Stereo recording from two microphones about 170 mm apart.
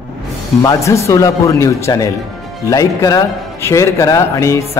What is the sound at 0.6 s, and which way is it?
A man's voice, 20° left (ahead or behind).